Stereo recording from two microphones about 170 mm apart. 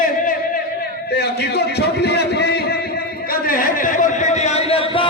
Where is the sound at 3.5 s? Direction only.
50° left (ahead or behind); by 5.1 s 30° left (ahead or behind).